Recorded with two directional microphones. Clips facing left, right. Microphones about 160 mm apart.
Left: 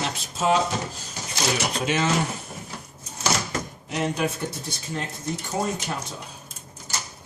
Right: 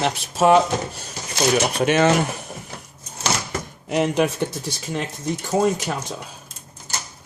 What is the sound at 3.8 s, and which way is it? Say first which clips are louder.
Speech: right 7 dB; 65° right (ahead or behind).